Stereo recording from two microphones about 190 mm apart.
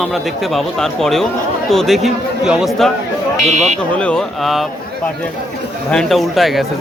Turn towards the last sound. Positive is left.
turn(degrees=0)  # may be behind; listen again after turning